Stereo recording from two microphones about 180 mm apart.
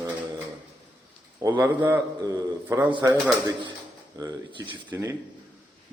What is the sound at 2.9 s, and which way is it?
Speech, 25° right (ahead or behind).